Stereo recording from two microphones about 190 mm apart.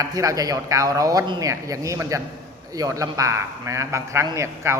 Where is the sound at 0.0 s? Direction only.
15° right (ahead or behind).